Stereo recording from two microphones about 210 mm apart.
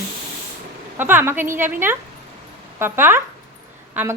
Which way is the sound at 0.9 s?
10° right (ahead or behind).